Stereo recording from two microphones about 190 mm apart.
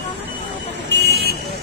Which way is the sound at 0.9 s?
60° right (ahead or behind).